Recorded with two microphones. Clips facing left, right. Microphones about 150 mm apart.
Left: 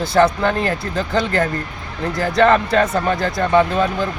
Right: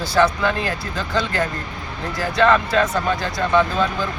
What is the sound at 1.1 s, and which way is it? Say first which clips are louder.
Speech: left 3 dB; 50° left (ahead or behind).